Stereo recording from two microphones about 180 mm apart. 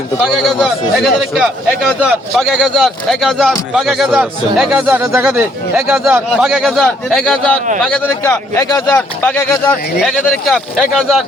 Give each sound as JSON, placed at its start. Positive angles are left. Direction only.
{"t": 0.3, "sound": "a man's voice", "side_deg": 0}
{"t": 9.0, "sound": "a man's voice", "side_deg": 5}